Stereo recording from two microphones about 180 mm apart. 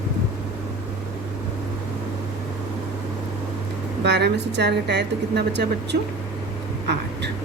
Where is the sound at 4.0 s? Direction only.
70° right (ahead or behind).